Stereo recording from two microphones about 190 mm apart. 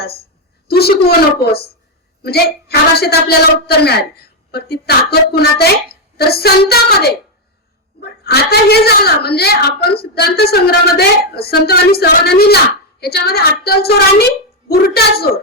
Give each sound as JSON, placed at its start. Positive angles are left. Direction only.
{"t": 0.7, "sound": "a woman's voice", "side_deg": 55}